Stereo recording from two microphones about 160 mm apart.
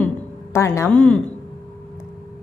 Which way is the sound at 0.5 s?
15° left (ahead or behind).